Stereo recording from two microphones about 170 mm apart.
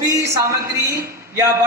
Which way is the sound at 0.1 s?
15° right (ahead or behind).